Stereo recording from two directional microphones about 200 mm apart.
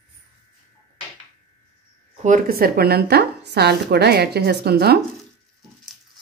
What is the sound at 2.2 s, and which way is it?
Speech, 45° right (ahead or behind).